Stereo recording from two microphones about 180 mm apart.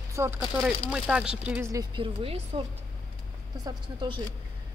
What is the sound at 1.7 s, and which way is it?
Speech, 25° right (ahead or behind).